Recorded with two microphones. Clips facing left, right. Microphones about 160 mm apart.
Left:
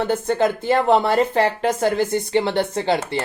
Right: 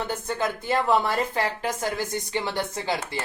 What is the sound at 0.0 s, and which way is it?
Speech, 60° left (ahead or behind).